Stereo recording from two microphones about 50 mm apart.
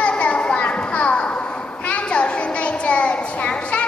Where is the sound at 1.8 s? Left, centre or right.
Left.